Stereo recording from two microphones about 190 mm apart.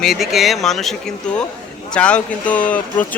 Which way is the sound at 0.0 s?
Centre (ahead or behind).